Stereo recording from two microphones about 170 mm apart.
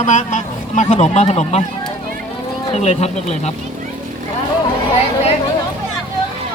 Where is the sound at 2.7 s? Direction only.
40° left (ahead or behind).